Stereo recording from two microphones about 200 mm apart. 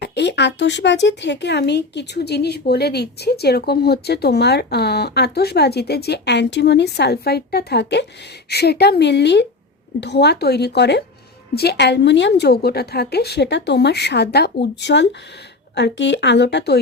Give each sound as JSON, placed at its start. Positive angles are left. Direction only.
{"t": 0.0, "sound": "speech", "side_deg": 60}